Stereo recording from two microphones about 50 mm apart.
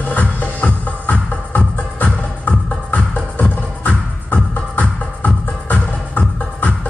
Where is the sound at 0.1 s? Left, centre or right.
Left.